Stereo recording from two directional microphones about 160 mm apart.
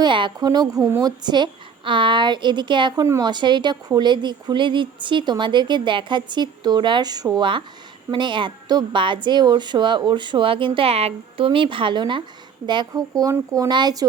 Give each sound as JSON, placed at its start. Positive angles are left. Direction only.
{"t": 0.0, "sound": "a woman's voice", "side_deg": -30}